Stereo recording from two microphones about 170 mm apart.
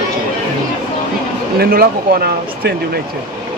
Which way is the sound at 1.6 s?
60° right (ahead or behind).